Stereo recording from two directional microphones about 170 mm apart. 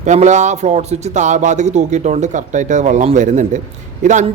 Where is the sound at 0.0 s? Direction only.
45° right (ahead or behind).